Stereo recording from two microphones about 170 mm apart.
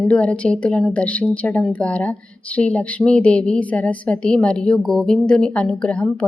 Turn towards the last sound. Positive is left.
turn(degrees=5)  # may be behind; listen again after turning